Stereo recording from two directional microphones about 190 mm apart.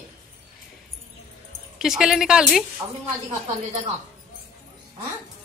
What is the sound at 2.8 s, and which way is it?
Speech, 20° right (ahead or behind).